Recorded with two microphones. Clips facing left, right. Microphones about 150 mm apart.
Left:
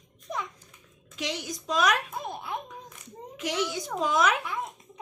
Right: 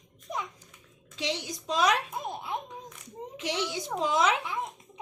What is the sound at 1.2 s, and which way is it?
Speech, 25° right (ahead or behind).